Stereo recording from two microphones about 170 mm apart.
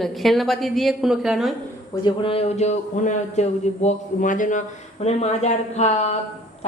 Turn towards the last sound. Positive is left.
turn(degrees=40)  # may be behind; listen again after turning